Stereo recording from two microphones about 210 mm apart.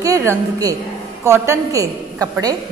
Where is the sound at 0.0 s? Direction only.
15° right (ahead or behind).